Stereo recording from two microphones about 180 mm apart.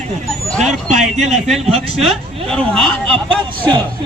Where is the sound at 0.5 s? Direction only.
Centre (ahead or behind).